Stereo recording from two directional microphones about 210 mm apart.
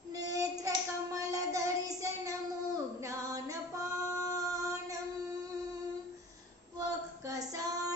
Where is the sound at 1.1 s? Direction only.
15° right (ahead or behind).